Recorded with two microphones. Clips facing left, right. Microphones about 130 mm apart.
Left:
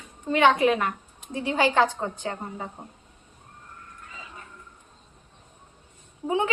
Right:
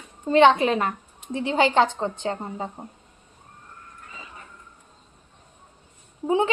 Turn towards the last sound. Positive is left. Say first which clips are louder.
# right 3 dB
turn(degrees=-30)  # may be behind; listen again after turning